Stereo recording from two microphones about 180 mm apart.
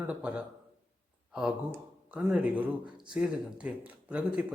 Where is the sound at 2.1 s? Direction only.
10° right (ahead or behind).